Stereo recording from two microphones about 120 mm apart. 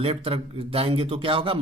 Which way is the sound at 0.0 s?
50° right (ahead or behind).